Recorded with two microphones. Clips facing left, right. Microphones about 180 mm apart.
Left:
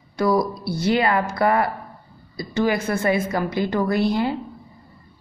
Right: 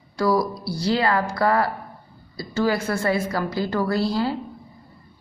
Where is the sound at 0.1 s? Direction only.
20° left (ahead or behind).